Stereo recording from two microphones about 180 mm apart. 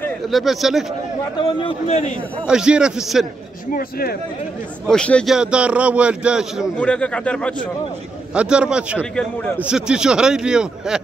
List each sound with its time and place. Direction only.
0.3 s speech: centre (ahead or behind)
1.6 s a man's voice: 30° left (ahead or behind)
2.4 s speech: 5° right (ahead or behind)
4.8 s speech: 5° left (ahead or behind)
6.8 s speech: 5° left (ahead or behind)
8.4 s speech: 5° right (ahead or behind)
9.1 s speech: 5° left (ahead or behind)
9.6 s speech: 5° right (ahead or behind)